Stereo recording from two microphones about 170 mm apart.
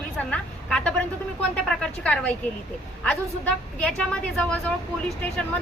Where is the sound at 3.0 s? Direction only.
5° left (ahead or behind).